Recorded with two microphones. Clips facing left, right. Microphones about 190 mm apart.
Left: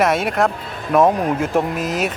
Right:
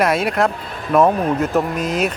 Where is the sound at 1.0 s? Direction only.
15° left (ahead or behind).